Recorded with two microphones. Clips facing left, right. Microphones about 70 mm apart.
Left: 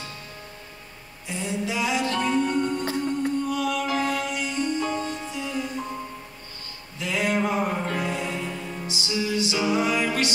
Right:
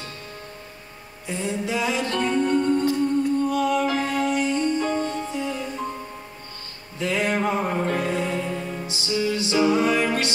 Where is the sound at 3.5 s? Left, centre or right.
Right.